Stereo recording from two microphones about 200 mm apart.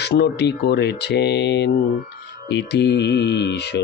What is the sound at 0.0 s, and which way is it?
Mantra, 55° left (ahead or behind).